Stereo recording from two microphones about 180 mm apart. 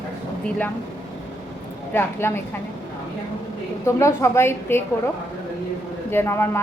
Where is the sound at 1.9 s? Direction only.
15° left (ahead or behind).